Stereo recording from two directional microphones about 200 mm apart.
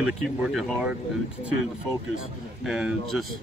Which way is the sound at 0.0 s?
Centre (ahead or behind).